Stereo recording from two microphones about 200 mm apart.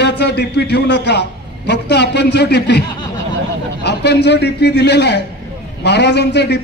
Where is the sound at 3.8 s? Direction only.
55° left (ahead or behind).